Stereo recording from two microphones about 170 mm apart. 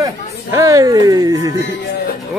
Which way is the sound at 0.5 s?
20° right (ahead or behind).